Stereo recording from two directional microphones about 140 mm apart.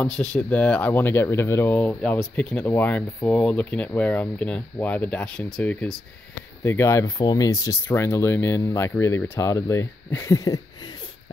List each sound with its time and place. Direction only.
0.0 s speech: 10° left (ahead or behind); by 10.6 s 25° left (ahead or behind)